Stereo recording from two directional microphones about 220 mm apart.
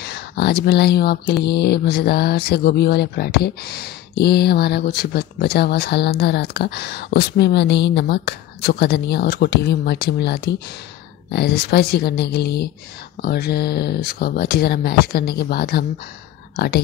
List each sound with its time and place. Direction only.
0.0 s speech: 50° left (ahead or behind)